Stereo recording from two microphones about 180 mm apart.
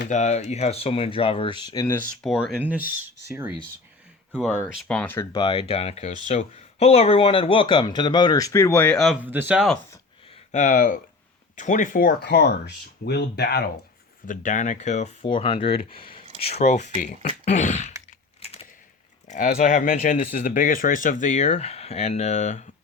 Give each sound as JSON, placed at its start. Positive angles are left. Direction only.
{"t": 0.1, "sound": "speech", "side_deg": 40}
{"t": 2.2, "sound": "speech", "side_deg": 0}
{"t": 4.8, "sound": "speech", "side_deg": 5}
{"t": 9.2, "sound": "speech", "side_deg": -10}
{"t": 10.5, "sound": "speech", "side_deg": 45}
{"t": 14.3, "sound": "speech", "side_deg": 45}
{"t": 18.4, "sound": "typewriter", "side_deg": 35}
{"t": 19.3, "sound": "speech", "side_deg": 40}